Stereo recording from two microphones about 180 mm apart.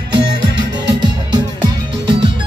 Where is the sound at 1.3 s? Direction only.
25° right (ahead or behind).